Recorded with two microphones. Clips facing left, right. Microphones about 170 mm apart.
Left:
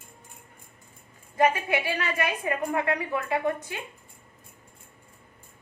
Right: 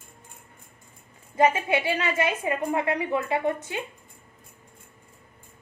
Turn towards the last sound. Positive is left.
turn(degrees=-20)  # may be behind; listen again after turning